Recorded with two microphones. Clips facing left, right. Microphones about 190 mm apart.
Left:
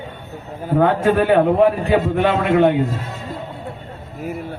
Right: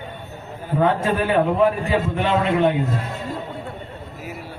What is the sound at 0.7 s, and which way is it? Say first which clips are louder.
A man's voice: left 4 dB; 60° left (ahead or behind).